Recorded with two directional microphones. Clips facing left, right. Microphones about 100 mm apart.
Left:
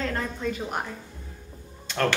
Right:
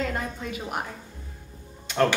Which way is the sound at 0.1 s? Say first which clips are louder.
Left 2 dB; 5° right (ahead or behind).